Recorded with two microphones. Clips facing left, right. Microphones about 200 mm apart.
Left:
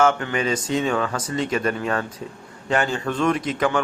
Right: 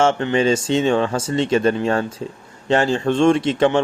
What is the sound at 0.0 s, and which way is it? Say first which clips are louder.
Speech: right 4 dB; 25° right (ahead or behind).